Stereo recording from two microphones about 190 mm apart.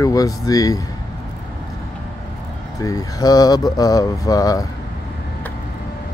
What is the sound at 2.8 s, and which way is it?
Speech, 20° left (ahead or behind).